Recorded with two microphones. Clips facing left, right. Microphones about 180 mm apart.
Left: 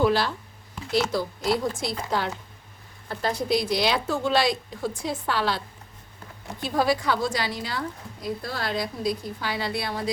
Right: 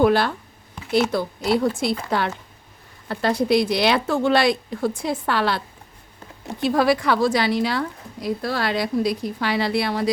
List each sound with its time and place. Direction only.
0.0 s a woman's voice: 55° right (ahead or behind); by 10.1 s 70° right (ahead or behind)